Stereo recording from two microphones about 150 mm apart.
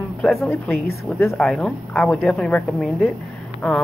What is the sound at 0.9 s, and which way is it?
Speech, 20° left (ahead or behind).